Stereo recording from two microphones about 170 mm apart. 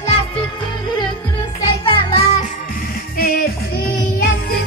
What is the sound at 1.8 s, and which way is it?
Music, 35° left (ahead or behind).